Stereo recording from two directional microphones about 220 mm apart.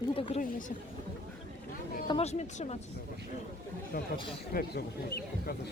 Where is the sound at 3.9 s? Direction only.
40° left (ahead or behind).